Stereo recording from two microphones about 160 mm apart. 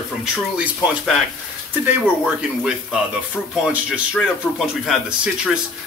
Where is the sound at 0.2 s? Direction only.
5° right (ahead or behind).